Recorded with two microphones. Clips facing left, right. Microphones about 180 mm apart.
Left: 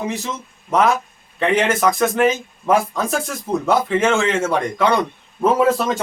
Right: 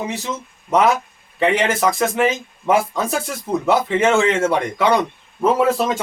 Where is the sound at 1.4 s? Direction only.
Centre (ahead or behind).